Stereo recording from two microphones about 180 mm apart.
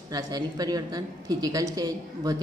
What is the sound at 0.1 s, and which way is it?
A woman's voice, 20° right (ahead or behind).